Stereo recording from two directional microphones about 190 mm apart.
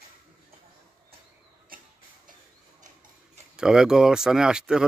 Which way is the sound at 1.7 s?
50° right (ahead or behind).